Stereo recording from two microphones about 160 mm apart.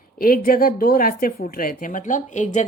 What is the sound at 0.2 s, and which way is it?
Speech, 65° left (ahead or behind).